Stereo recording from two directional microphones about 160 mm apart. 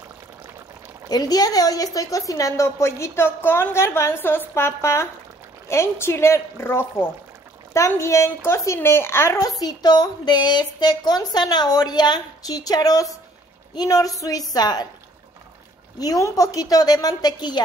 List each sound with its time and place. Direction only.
1.0 s a woman's voice: 25° left (ahead or behind)
16.0 s a woman's voice: 20° left (ahead or behind)